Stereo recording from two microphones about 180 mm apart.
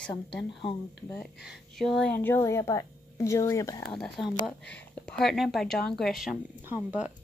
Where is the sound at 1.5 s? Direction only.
Centre (ahead or behind); by 3.9 s 20° left (ahead or behind).